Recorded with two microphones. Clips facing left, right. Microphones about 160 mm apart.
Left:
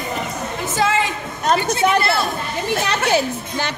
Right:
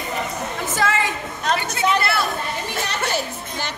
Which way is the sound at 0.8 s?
20° left (ahead or behind).